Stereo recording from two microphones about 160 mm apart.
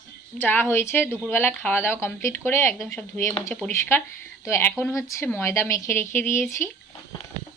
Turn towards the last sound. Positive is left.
turn(degrees=15)  # may be behind; listen again after turning